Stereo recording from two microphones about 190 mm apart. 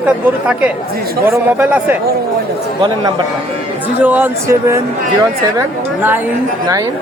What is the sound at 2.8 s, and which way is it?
Speech, 20° right (ahead or behind).